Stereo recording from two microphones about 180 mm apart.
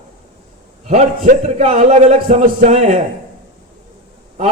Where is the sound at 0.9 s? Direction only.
40° right (ahead or behind).